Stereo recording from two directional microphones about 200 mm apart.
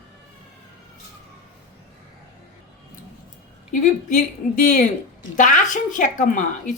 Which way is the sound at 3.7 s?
40° left (ahead or behind).